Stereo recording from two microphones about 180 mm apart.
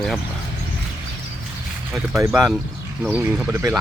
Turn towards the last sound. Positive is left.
turn(degrees=-10)  # may be behind; listen again after turning